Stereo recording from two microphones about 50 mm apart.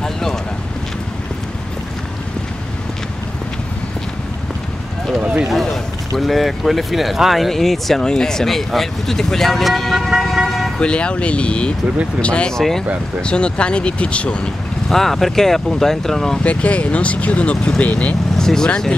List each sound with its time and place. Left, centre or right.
0.0 s boat: centre
5.5 s speech: centre
10.1 s vehicle: centre
10.8 s speech: left
12.5 s speech: centre
13.2 s speech: left
14.9 s speech: centre
16.4 s speech: left
18.4 s speech: centre